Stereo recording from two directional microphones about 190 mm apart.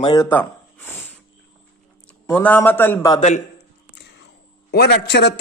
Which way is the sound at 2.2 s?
10° left (ahead or behind).